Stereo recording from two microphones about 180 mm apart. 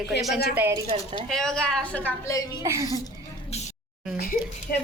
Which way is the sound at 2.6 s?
20° right (ahead or behind).